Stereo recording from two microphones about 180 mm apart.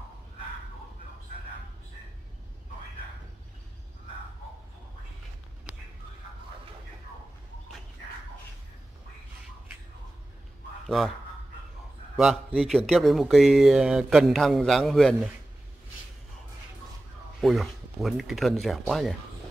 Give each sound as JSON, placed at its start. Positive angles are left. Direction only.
{"t": 12.5, "sound": "speech", "side_deg": 0}
{"t": 17.4, "sound": "speech", "side_deg": 0}